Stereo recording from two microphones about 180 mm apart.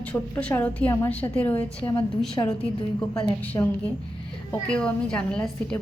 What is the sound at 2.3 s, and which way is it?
Speech, 25° left (ahead or behind).